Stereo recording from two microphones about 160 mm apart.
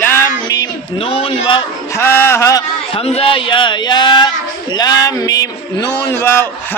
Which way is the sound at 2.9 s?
40° left (ahead or behind).